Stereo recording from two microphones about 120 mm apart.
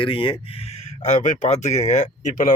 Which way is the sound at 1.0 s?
90° left.